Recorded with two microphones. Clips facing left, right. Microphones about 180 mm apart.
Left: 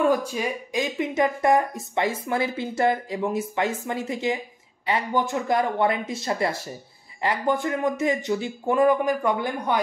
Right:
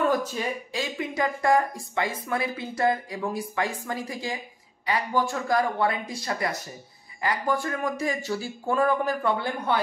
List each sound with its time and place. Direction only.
0.1 s speech: 10° left (ahead or behind)